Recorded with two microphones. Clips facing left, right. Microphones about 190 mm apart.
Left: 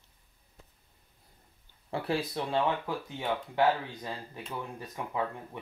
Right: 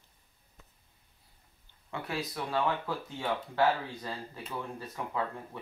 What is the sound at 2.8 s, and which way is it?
Speech, 15° left (ahead or behind).